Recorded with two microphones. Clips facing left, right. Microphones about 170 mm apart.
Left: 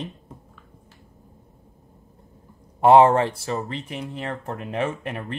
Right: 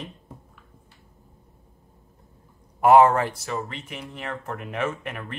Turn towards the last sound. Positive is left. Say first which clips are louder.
# left 2 dB
turn(degrees=30)  # may be behind; listen again after turning